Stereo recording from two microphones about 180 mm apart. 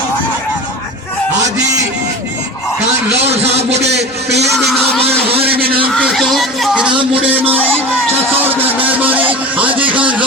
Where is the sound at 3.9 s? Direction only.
65° right (ahead or behind).